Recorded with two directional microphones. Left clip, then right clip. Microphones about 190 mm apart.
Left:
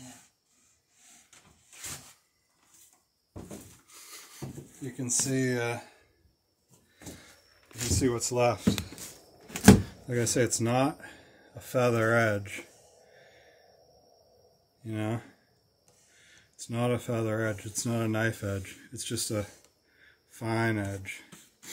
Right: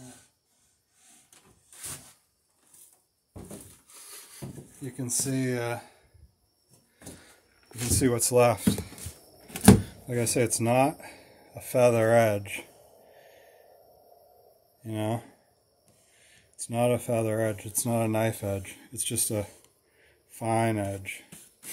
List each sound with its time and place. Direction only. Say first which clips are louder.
4.9 s speech: left 1 dB; 25° right (ahead or behind)
7.9 s speech: right 5 dB; 60° right (ahead or behind)
9.5 s a sound: even; 15° right (ahead or behind)
11.5 s speech: right 5 dB; 10° right (ahead or behind)
14.8 s a sound: right 3 dB; 10° right (ahead or behind)
16.3 s speech: right 2 dB; 5° right (ahead or behind)